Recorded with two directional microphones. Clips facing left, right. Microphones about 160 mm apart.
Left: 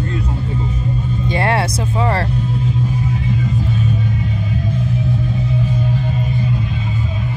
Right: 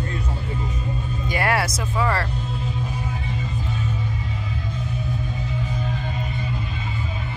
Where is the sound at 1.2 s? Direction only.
25° left (ahead or behind).